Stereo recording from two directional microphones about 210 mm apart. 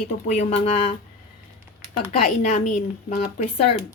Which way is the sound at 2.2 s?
35° left (ahead or behind).